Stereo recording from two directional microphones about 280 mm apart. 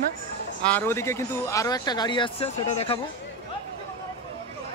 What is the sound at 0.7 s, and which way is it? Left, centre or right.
Speech, centre.